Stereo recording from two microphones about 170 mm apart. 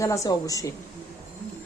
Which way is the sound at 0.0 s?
20° left (ahead or behind).